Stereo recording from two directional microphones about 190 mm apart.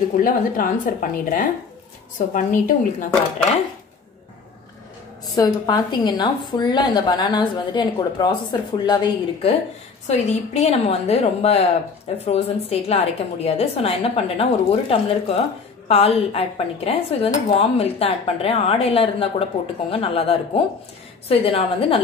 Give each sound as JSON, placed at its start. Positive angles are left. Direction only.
{"t": 0.2, "sound": "a woman's voice", "side_deg": 50}
{"t": 5.3, "sound": "a woman's voice", "side_deg": 20}